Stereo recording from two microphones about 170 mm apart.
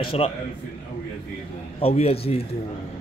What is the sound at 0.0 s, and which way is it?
Speech, 35° left (ahead or behind).